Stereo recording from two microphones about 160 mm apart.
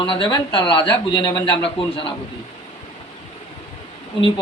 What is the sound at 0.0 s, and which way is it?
A man's voice, 30° left (ahead or behind).